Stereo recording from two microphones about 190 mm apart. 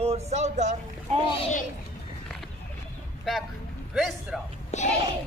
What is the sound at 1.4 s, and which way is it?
Speech, 40° left (ahead or behind).